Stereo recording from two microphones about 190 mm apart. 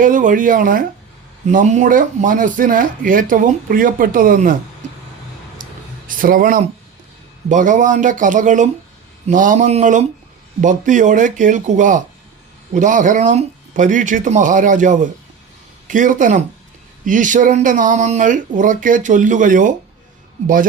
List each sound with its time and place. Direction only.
0.0 s speech: 45° right (ahead or behind)
5.6 s a sound: 45° right (ahead or behind)
6.1 s speech: 45° right (ahead or behind)